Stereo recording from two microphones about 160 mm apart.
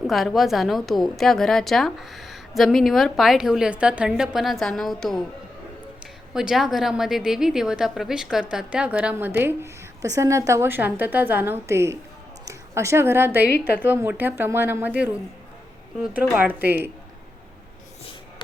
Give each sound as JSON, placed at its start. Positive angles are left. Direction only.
{"t": 0.1, "sound": "a woman's voice", "side_deg": 0}
{"t": 6.3, "sound": "a woman's voice", "side_deg": -5}
{"t": 16.1, "sound": "a woman's voice", "side_deg": -10}